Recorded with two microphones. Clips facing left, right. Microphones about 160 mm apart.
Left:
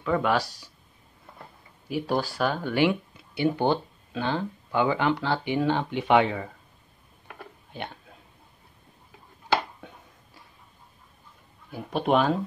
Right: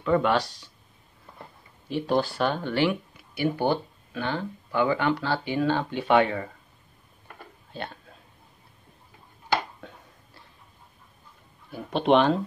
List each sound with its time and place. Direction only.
0.0 s speech: 5° left (ahead or behind)
1.9 s speech: 5° left (ahead or behind)
2.9 s speech: 25° left (ahead or behind)
7.7 s speech: 15° left (ahead or behind)
9.8 s a sound: 15° left (ahead or behind)
11.7 s speech: 5° left (ahead or behind)